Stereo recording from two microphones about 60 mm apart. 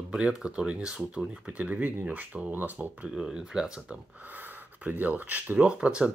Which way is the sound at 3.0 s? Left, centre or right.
Centre.